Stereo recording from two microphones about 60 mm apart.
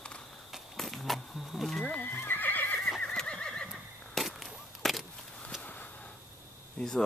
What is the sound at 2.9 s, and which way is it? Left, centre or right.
Neigh, centre.